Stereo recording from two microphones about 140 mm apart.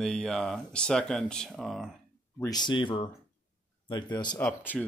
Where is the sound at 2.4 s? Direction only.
30° left (ahead or behind).